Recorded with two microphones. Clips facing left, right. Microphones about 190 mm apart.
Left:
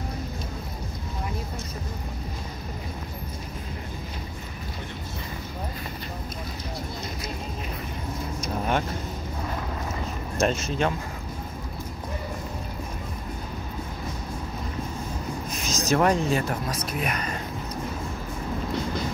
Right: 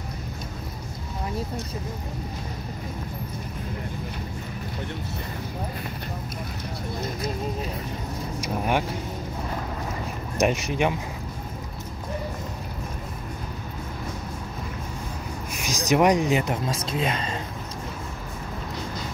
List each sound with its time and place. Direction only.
8.4 s vehicle: 15° right (ahead or behind)
10.4 s speech: 15° right (ahead or behind)
15.5 s speech: 15° right (ahead or behind)